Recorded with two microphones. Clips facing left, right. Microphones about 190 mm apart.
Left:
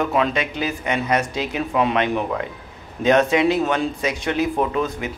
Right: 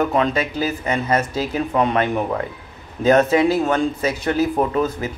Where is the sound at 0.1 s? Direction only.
35° right (ahead or behind).